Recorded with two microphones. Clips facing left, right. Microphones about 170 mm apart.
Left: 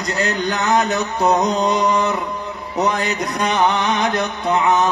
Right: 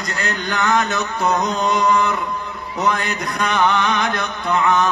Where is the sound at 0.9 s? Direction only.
35° left (ahead or behind).